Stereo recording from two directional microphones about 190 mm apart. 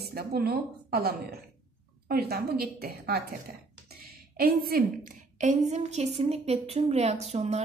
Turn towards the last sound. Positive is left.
turn(degrees=-35)  # may be behind; listen again after turning